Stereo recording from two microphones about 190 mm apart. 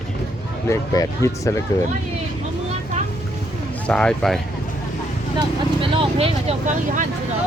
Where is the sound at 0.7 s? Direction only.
15° left (ahead or behind).